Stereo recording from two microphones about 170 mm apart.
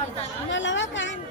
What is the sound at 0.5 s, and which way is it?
Speech, 90° left.